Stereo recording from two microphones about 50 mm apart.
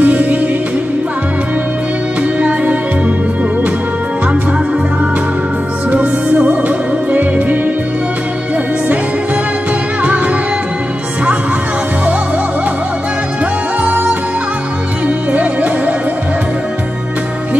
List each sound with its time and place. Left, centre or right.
0.0 s music: right
5.9 s music: right
10.0 s music: right
13.8 s music: right